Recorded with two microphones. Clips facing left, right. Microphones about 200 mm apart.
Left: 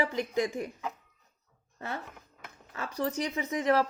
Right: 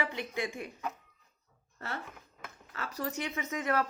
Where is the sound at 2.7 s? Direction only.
30° left (ahead or behind).